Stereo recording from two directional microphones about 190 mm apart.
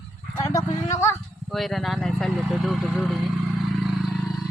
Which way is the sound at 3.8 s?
Centre (ahead or behind).